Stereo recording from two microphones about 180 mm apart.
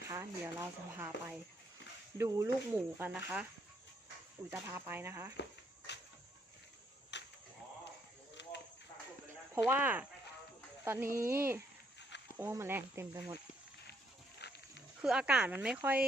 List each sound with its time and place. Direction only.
0.1 s speech: 15° right (ahead or behind)
4.5 s speech: 10° right (ahead or behind)
5.4 s a sound: 70° left (ahead or behind)
7.1 s goat: 80° left
9.6 s speech: 10° right (ahead or behind)
11.2 s speech: 55° right (ahead or behind)
12.4 s speech: 15° right (ahead or behind)
14.3 s pig: 65° left (ahead or behind)
15.0 s speech: 5° right (ahead or behind)